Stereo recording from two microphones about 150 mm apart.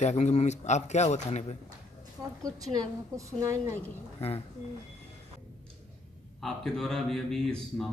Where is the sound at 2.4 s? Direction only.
25° right (ahead or behind).